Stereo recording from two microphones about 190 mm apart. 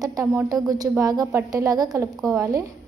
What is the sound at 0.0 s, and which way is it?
A woman's voice, 15° right (ahead or behind).